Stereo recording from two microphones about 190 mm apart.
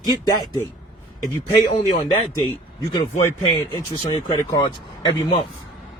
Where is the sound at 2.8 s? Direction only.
15° left (ahead or behind).